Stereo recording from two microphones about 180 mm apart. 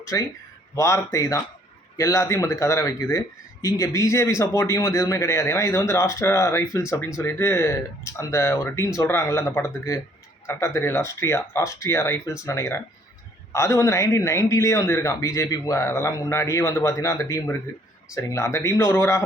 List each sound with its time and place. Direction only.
0.0 s speech: 20° left (ahead or behind)